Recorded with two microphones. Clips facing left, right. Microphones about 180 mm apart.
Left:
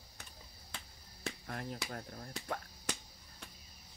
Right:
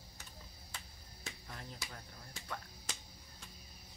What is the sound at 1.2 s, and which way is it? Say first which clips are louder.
Speech: left 8 dB; 60° left (ahead or behind).